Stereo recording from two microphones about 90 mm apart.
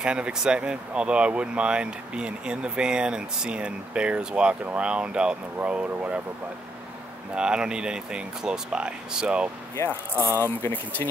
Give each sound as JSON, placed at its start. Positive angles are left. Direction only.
{"t": 0.0, "sound": "speech", "side_deg": -10}
{"t": 7.3, "sound": "speech", "side_deg": -10}
{"t": 9.8, "sound": "speech", "side_deg": -30}
{"t": 10.6, "sound": "speech", "side_deg": 20}